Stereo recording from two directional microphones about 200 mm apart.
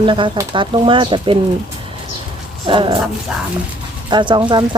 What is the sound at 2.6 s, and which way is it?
Speech, 25° right (ahead or behind).